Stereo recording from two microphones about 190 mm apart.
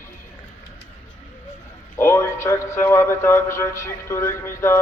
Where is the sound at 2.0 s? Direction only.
15° left (ahead or behind).